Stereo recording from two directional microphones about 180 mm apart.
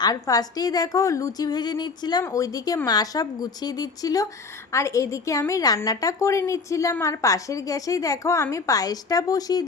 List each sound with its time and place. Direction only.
0.0 s a woman's voice: 20° left (ahead or behind)